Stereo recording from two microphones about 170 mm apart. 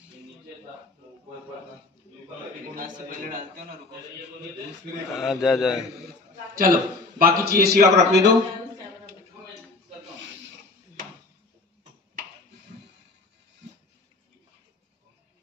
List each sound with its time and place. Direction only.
2.7 s a man's voice: 55° right (ahead or behind)
5.1 s a man's voice: centre (ahead or behind)
6.5 s a man's voice: 60° right (ahead or behind); by 8.4 s 80° right